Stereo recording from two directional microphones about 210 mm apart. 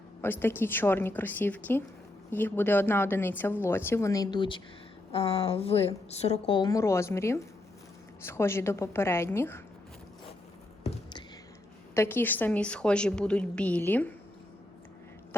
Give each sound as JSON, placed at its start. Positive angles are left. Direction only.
{"t": 0.2, "sound": "a woman's voice", "side_deg": 10}
{"t": 11.9, "sound": "speech", "side_deg": 10}